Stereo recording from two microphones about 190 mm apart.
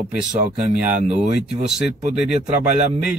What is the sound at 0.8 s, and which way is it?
Speech, 35° right (ahead or behind).